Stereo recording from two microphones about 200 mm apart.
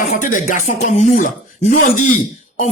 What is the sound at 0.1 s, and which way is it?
Speech, 40° left (ahead or behind).